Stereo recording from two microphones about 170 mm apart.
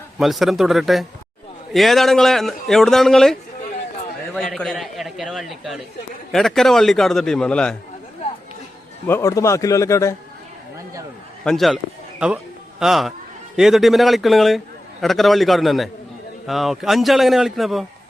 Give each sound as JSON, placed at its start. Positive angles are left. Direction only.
{"t": 0.2, "sound": "speech", "side_deg": 0}
{"t": 4.4, "sound": "speech", "side_deg": 5}
{"t": 9.0, "sound": "a man's voice", "side_deg": 15}
{"t": 11.4, "sound": "speech", "side_deg": 0}
{"t": 12.8, "sound": "speech", "side_deg": 0}